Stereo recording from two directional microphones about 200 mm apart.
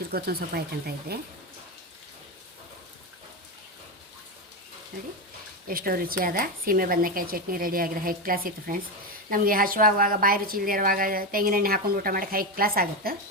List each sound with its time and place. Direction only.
0.1 s a woman's voice: 50° right (ahead or behind)
5.6 s a woman's voice: 45° right (ahead or behind)